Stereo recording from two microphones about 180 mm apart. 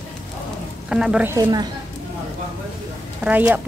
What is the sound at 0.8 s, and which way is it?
Speech, 5° right (ahead or behind).